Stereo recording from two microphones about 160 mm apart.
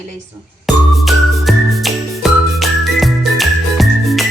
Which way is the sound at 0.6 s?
Centre (ahead or behind).